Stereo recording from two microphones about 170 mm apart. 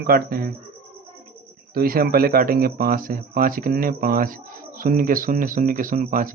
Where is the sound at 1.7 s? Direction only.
60° right (ahead or behind).